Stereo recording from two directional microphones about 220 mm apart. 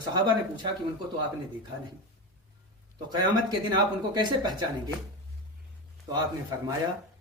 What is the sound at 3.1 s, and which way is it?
Speech, 20° right (ahead or behind).